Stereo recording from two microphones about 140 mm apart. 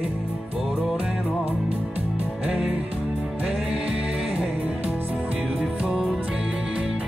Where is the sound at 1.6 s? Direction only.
45° right (ahead or behind).